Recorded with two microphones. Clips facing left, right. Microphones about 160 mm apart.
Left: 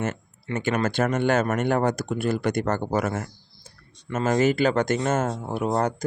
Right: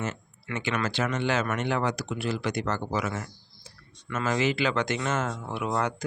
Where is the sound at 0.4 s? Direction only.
45° left (ahead or behind).